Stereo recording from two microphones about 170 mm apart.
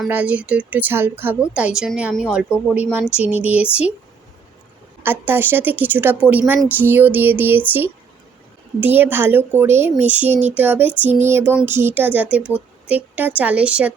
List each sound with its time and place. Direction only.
0.0 s a woman's voice: 10° right (ahead or behind)
3.2 s a sound: 35° left (ahead or behind)
3.5 s a woman's voice: 5° right (ahead or behind)
5.2 s a woman's voice: 10° right (ahead or behind)